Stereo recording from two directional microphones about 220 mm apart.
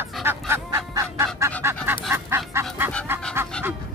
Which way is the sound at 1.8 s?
10° right (ahead or behind).